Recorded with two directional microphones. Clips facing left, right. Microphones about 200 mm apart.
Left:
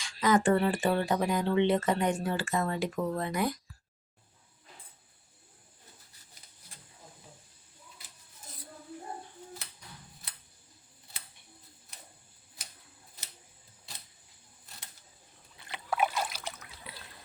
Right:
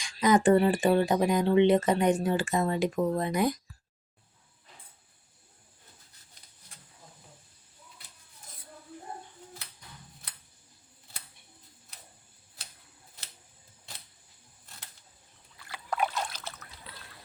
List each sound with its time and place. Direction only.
0.0 s speech: 15° right (ahead or behind)
15.5 s boat: 20° left (ahead or behind)
15.9 s splash: 5° left (ahead or behind)